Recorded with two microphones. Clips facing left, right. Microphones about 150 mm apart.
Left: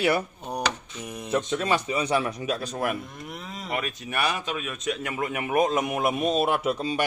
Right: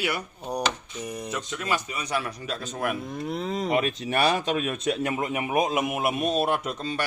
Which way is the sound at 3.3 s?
35° right (ahead or behind).